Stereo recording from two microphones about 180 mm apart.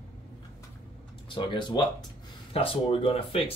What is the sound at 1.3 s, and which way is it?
Speech, 25° left (ahead or behind).